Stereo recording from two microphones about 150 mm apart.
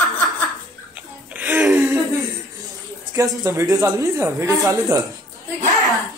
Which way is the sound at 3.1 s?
20° right (ahead or behind).